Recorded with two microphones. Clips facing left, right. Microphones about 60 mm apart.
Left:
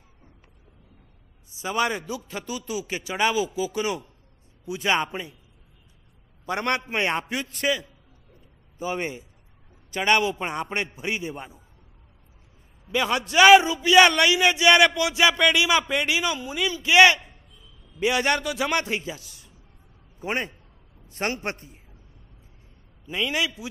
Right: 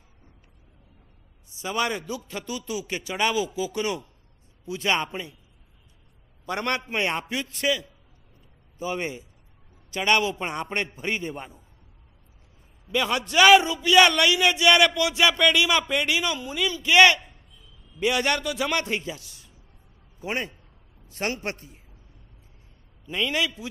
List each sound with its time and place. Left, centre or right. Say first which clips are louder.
1.6 s a man's voice: left 2 dB; left
6.4 s a man's voice: left 2 dB; left; by 11.6 s centre
12.9 s a man's voice: left 1 dB; left
23.0 s a man's voice: even; centre